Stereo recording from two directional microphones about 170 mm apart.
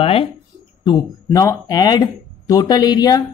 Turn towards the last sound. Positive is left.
turn(degrees=20)  # may be behind; listen again after turning